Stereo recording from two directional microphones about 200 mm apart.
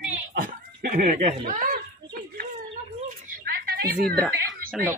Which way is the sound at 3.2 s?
45° right (ahead or behind).